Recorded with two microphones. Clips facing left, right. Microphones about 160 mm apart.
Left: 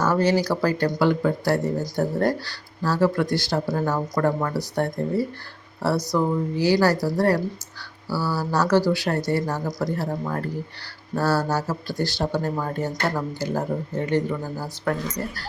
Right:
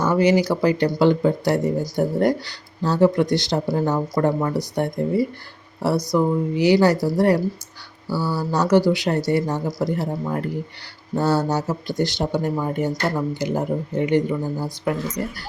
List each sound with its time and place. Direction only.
0.0 s speech: 15° right (ahead or behind)